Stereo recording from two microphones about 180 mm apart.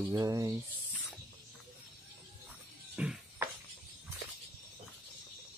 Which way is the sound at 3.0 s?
5° right (ahead or behind).